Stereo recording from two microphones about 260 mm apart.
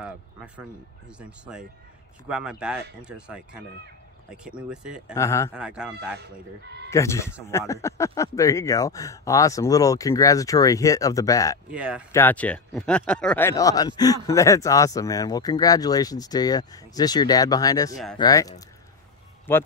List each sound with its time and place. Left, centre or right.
0.0 s speech: centre
5.1 s speech: centre
5.5 s speech: centre
6.9 s speech: centre
11.7 s speech: centre
12.1 s speech: centre